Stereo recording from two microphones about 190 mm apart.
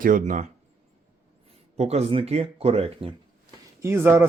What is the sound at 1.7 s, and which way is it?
Speech, 35° right (ahead or behind).